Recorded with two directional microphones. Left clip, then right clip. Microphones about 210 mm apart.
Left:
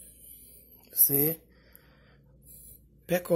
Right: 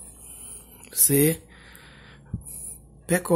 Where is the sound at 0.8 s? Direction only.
20° right (ahead or behind).